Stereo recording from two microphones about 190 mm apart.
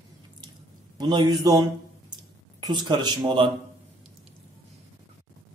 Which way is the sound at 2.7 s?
20° right (ahead or behind).